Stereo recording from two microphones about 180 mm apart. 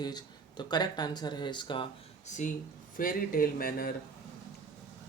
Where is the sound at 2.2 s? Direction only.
40° left (ahead or behind).